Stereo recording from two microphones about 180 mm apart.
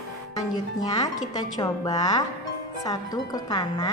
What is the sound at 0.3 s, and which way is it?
A woman's voice, 20° left (ahead or behind).